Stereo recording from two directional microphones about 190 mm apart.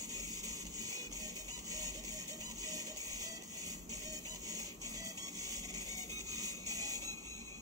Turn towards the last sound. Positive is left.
turn(degrees=-20)  # may be behind; listen again after turning